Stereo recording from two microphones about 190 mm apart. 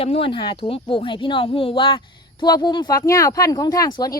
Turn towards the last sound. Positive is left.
turn(degrees=20)  # may be behind; listen again after turning